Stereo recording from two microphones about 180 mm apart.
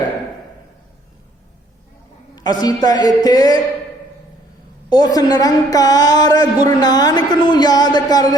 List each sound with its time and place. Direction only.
2.3 s a woman's voice: 20° left (ahead or behind)
4.9 s a woman's voice: 20° left (ahead or behind)